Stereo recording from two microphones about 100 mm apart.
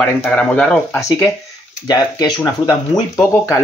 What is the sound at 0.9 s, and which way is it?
Speech, 35° left (ahead or behind).